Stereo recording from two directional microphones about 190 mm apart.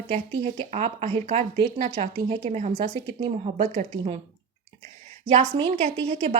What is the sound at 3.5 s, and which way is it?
Speech, 40° right (ahead or behind).